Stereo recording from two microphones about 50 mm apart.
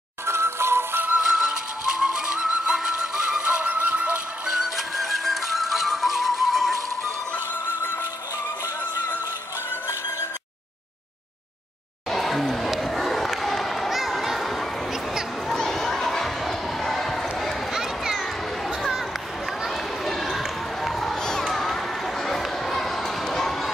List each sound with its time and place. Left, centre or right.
0.3 s music: right
1.2 s music: centre; by 4.2 s right
4.6 s music: centre
12.1 s a sound: centre
17.7 s a sound: centre
20.3 s run: centre